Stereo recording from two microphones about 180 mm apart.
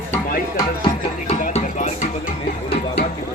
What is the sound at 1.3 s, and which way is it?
Music, 40° left (ahead or behind).